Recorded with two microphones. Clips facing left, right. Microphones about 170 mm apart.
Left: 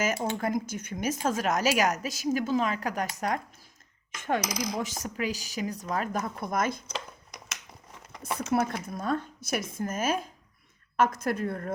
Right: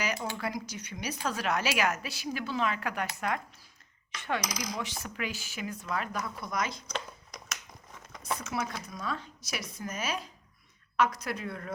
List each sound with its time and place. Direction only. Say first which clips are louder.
0.3 s a woman's voice: left 6 dB; 45° left (ahead or behind)
3.2 s a sound: left 3 dB; 40° left (ahead or behind)
8.5 s a woman's voice: left 7 dB; 50° left (ahead or behind)